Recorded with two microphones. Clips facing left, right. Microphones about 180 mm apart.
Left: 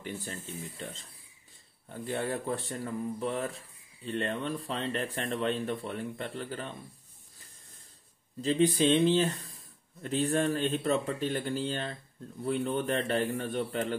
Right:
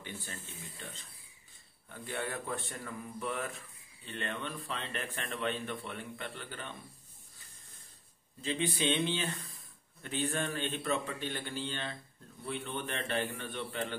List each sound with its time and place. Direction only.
0.0 s speech: 35° left (ahead or behind)
8.4 s speech: 40° left (ahead or behind)